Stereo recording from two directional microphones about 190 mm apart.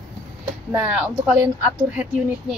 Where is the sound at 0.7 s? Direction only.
5° right (ahead or behind).